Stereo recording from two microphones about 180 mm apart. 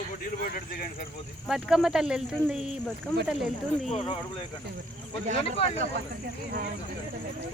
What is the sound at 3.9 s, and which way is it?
Speech, 35° left (ahead or behind).